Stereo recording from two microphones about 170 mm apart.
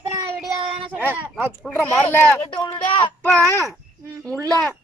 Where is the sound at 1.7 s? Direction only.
10° left (ahead or behind).